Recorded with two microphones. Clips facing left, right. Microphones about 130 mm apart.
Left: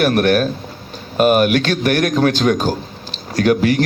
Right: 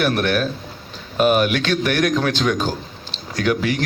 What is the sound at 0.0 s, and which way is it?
A man's voice, 45° left (ahead or behind).